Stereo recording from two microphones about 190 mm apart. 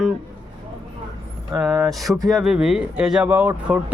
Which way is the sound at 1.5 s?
5° right (ahead or behind).